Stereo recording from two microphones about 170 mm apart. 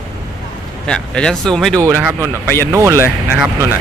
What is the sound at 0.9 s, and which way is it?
Speech, 5° left (ahead or behind).